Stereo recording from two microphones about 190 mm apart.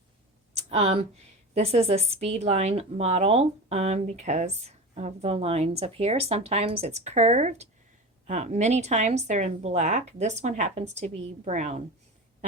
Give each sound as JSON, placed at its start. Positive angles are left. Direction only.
{"t": 0.7, "sound": "a woman's voice", "side_deg": -35}